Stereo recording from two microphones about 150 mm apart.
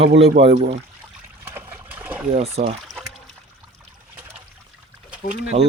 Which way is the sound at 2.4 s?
45° right (ahead or behind).